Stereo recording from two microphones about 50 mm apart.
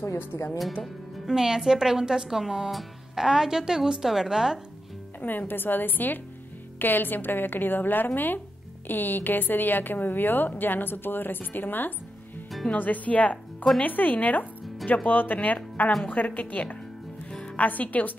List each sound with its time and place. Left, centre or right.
0.3 s speech: left
1.2 s speech: centre
5.2 s a woman's voice: left